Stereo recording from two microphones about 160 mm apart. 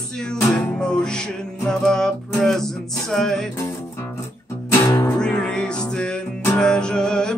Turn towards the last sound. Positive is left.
turn(degrees=5)  # may be behind; listen again after turning